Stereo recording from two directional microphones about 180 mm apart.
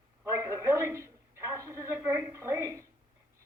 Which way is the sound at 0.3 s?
15° right (ahead or behind).